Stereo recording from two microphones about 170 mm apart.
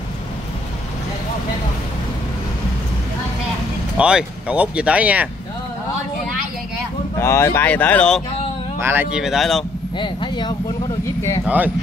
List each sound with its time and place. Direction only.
3.9 s speech: 5° right (ahead or behind)
7.2 s speech: 15° left (ahead or behind)
8.7 s speech: 15° right (ahead or behind)
9.9 s speech: 30° left (ahead or behind)
11.4 s speech: 10° right (ahead or behind)